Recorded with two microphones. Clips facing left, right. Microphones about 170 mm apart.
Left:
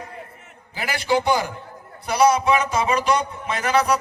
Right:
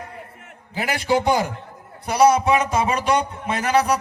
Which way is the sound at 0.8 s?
45° right (ahead or behind).